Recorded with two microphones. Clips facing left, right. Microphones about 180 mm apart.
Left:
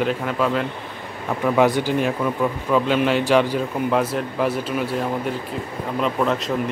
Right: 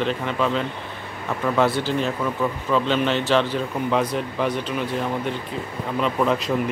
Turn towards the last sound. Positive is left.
turn(degrees=0)  # may be behind; listen again after turning